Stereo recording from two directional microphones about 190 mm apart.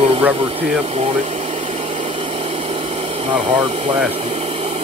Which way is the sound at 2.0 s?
30° right (ahead or behind).